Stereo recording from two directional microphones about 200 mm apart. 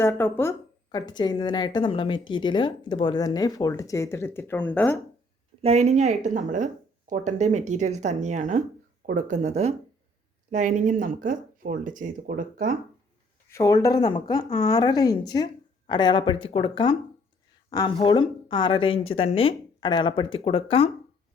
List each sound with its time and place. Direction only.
0.0 s a woman's voice: 10° left (ahead or behind)
5.6 s speech: 35° right (ahead or behind)
13.5 s a woman's voice: 15° left (ahead or behind)